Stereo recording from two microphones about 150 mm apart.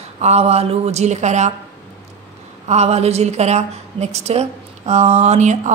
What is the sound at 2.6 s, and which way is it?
A woman's voice, 45° right (ahead or behind).